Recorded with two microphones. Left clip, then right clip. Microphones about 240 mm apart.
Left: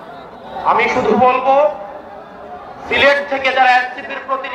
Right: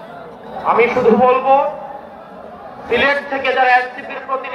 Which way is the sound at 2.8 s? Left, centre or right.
Left.